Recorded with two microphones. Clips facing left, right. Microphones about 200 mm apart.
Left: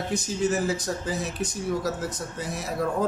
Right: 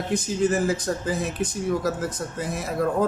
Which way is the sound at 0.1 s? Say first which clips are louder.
Right 4 dB; 55° right (ahead or behind).